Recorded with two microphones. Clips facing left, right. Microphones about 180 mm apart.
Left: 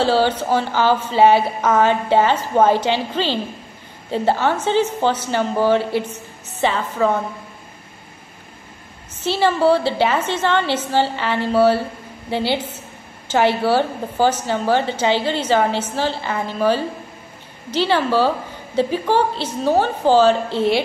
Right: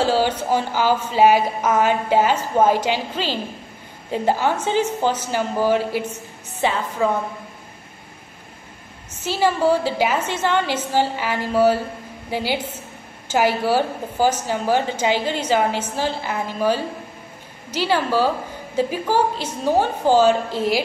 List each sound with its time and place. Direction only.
0.0 s a woman's voice: 10° right (ahead or behind)
9.2 s a woman's voice: 10° right (ahead or behind)
13.7 s a woman's voice: 10° right (ahead or behind)
20.5 s speech: 25° left (ahead or behind)